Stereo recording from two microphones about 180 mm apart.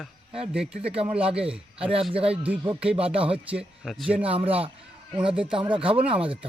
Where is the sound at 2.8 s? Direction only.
5° right (ahead or behind).